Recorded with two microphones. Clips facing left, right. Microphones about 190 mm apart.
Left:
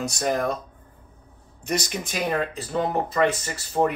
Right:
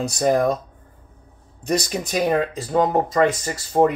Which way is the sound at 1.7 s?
40° right (ahead or behind).